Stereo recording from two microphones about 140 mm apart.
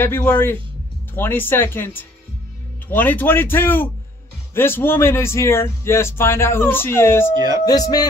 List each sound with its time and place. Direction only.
0.0 s speech: 15° left (ahead or behind)
7.3 s speech: 25° right (ahead or behind)
7.6 s speech: 25° left (ahead or behind)